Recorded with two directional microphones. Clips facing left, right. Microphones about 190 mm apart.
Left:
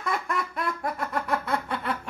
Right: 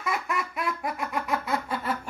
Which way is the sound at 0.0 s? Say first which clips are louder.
Left 1 dB; 5° right (ahead or behind).